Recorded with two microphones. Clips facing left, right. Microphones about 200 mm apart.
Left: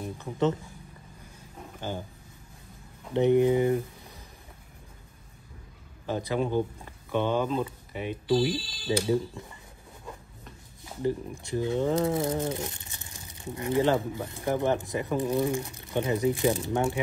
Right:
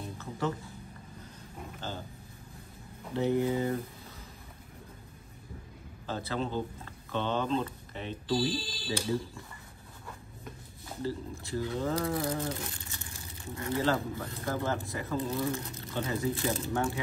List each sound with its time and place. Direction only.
0.2 s speech: 20° left (ahead or behind)
1.8 s speech: 15° left (ahead or behind)
3.1 s speech: 20° left (ahead or behind)
6.0 s speech: 15° left (ahead or behind)
11.0 s speech: 15° left (ahead or behind)